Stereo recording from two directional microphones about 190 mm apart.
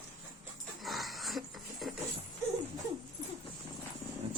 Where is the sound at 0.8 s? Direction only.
Centre (ahead or behind).